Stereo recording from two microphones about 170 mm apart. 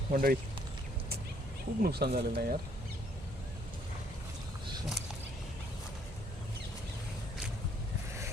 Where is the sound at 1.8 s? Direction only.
70° right (ahead or behind).